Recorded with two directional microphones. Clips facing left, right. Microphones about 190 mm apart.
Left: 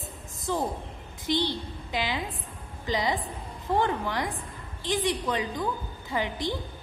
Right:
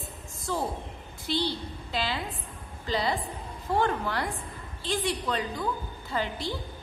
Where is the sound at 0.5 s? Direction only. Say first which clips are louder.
Left 2 dB; 15° left (ahead or behind).